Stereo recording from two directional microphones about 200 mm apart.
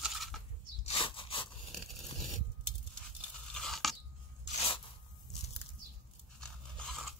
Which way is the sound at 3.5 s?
Centre (ahead or behind).